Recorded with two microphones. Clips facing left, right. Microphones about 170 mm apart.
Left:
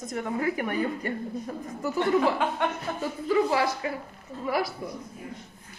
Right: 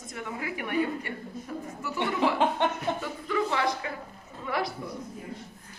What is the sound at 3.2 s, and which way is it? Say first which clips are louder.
Speech: left 5 dB; 30° left (ahead or behind).